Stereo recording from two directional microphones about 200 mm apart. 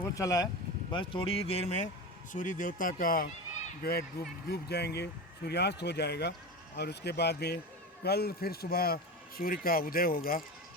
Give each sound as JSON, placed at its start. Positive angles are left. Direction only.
{"t": 0.0, "sound": "speech", "side_deg": 15}